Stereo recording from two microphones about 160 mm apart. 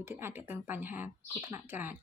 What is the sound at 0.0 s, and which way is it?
Speech, 15° right (ahead or behind).